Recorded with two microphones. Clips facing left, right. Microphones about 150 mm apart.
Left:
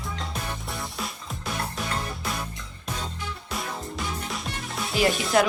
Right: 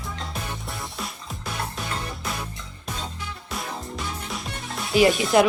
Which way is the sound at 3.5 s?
Centre (ahead or behind).